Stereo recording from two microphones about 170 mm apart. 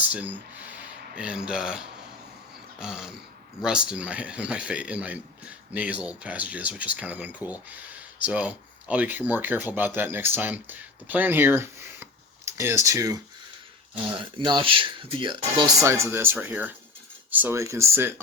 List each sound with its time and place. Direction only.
0.1 s speech: 10° right (ahead or behind)
2.8 s speech: 5° right (ahead or behind); by 13.1 s 20° right (ahead or behind)
13.9 s speech: 30° right (ahead or behind)
15.9 s speech: 15° right (ahead or behind)